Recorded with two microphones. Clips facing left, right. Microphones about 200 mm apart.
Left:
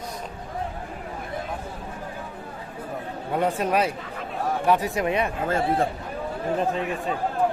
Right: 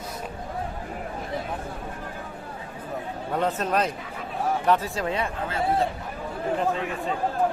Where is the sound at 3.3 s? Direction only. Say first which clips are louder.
Left 2 dB; 10° left (ahead or behind).